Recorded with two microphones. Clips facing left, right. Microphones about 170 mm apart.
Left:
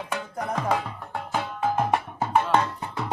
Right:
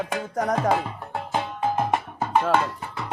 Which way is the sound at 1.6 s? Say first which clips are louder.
Left 1 dB; 10° right (ahead or behind).